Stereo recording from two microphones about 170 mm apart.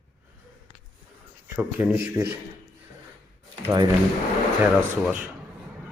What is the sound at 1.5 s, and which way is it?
Speech, 10° right (ahead or behind).